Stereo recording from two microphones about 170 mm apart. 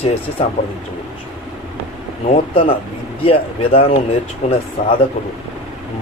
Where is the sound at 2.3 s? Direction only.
35° left (ahead or behind).